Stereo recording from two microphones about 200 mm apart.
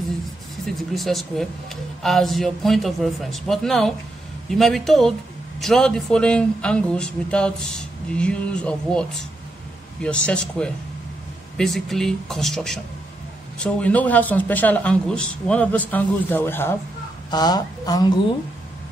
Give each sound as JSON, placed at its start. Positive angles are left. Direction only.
{"t": 0.7, "sound": "speech", "side_deg": 0}
{"t": 10.0, "sound": "speech", "side_deg": 5}